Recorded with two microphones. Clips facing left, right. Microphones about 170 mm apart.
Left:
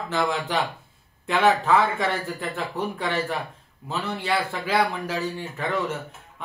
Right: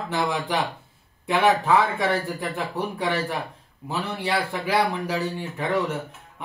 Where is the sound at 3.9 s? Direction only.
15° right (ahead or behind).